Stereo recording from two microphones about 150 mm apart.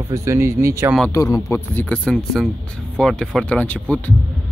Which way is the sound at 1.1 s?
20° left (ahead or behind).